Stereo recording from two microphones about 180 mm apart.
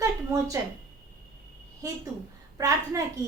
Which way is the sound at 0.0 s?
20° right (ahead or behind).